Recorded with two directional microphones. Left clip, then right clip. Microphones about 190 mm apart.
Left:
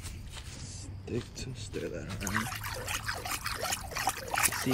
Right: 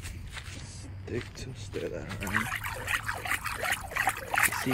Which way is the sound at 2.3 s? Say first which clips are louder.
Right 4 dB; centre (ahead or behind).